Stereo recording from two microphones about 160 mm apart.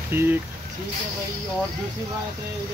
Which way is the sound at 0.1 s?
15° right (ahead or behind).